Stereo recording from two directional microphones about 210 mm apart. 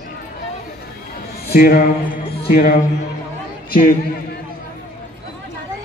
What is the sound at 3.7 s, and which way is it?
Speech, 40° left (ahead or behind).